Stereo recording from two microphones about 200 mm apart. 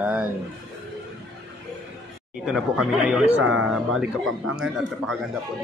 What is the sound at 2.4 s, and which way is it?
A man's voice, centre (ahead or behind).